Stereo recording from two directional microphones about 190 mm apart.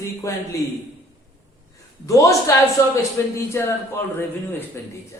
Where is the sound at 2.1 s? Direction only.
15° left (ahead or behind).